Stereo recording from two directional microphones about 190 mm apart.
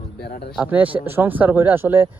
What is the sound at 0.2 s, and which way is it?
Speech, 55° left (ahead or behind).